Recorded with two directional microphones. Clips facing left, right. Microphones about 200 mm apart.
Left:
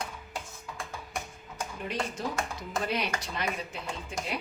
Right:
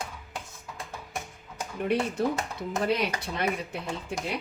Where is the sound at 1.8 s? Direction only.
60° right (ahead or behind).